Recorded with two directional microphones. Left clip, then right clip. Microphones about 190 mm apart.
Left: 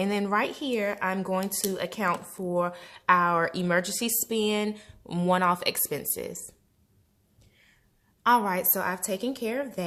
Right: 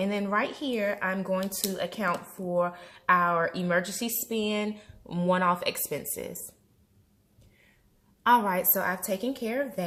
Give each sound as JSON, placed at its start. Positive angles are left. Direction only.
{"t": 0.0, "sound": "speech", "side_deg": 40}
{"t": 8.2, "sound": "speech", "side_deg": 25}